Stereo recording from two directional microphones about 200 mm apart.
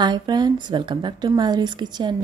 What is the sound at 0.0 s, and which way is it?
A woman's voice, 20° right (ahead or behind).